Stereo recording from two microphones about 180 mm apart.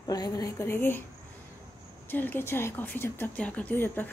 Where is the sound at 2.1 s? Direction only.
10° left (ahead or behind).